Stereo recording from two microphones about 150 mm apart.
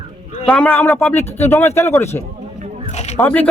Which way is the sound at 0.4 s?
5° left (ahead or behind).